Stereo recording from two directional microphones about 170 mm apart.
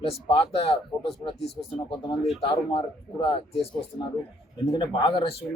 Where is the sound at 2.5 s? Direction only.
30° left (ahead or behind).